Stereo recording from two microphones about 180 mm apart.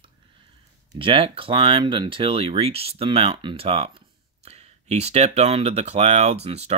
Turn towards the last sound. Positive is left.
turn(degrees=-35)  # may be behind; listen again after turning